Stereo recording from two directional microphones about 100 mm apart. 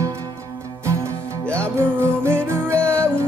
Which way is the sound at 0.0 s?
35° right (ahead or behind).